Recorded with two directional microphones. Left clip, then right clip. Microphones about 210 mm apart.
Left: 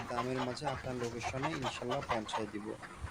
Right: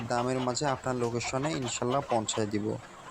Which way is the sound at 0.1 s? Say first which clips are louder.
Right 8 dB; 10° right (ahead or behind).